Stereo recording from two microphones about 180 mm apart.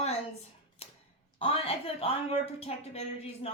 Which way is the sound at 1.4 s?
30° left (ahead or behind).